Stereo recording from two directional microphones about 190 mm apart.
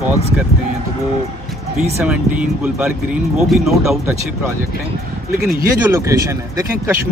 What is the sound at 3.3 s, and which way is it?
Speech, centre (ahead or behind).